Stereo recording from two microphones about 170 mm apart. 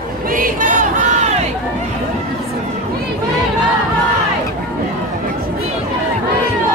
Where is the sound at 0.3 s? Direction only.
55° right (ahead or behind).